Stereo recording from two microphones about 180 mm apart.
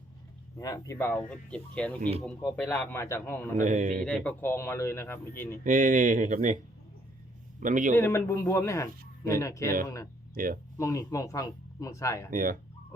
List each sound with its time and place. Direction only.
0.6 s speech: 20° left (ahead or behind)
2.0 s speech: 35° right (ahead or behind)
2.6 s speech: 10° left (ahead or behind)
3.6 s speech: 45° right (ahead or behind)
4.0 s speech: 5° left (ahead or behind)
5.6 s speech: 45° right (ahead or behind)
7.6 s speech: 45° right (ahead or behind)
7.9 s speech: 15° left (ahead or behind)
10.3 s speech: 55° right (ahead or behind)
10.8 s speech: 15° left (ahead or behind)
12.3 s speech: 50° right (ahead or behind)